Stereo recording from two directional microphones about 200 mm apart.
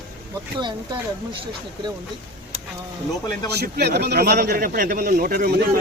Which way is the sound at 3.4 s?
55° right (ahead or behind).